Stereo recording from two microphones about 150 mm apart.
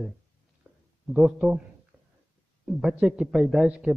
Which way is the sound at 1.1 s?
5° right (ahead or behind).